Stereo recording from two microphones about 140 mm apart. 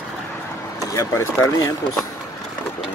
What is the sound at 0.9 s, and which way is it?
Speech, 20° left (ahead or behind).